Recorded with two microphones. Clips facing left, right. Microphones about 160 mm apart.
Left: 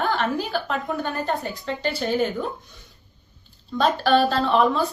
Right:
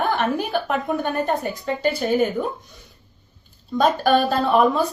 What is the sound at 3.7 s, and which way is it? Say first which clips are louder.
Speech: right 1 dB; 10° right (ahead or behind).